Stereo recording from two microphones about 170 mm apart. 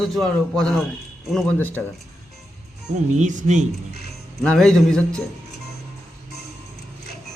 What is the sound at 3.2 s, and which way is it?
Speech, 45° right (ahead or behind).